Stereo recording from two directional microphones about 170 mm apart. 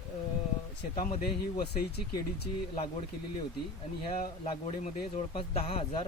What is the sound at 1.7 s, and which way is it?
Speech, 70° left (ahead or behind).